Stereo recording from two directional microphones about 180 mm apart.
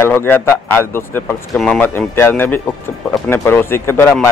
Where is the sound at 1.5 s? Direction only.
5° left (ahead or behind).